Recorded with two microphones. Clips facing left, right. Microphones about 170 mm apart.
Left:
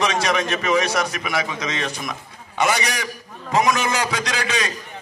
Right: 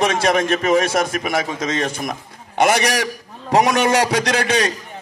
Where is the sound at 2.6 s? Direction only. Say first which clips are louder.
Right 5 dB; 65° right (ahead or behind).